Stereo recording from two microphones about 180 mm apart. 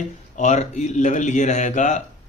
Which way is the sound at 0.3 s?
40° left (ahead or behind).